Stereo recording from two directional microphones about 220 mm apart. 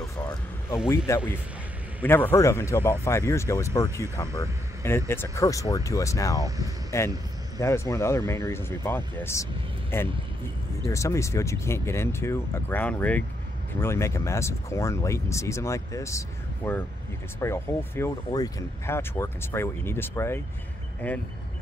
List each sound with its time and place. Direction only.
0.8 s speech: 15° left (ahead or behind)
6.4 s speech: 15° right (ahead or behind)
6.9 s speech: 10° left (ahead or behind)